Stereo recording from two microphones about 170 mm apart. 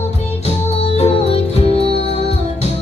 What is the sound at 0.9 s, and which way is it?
Music, 35° left (ahead or behind).